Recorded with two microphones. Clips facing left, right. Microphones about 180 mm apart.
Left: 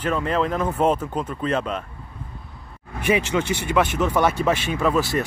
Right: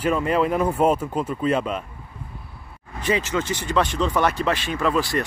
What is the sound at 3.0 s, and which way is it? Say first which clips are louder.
Speech: left 2 dB; 10° left (ahead or behind).